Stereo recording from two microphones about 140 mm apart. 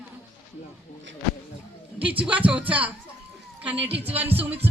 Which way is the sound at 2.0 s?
40° right (ahead or behind).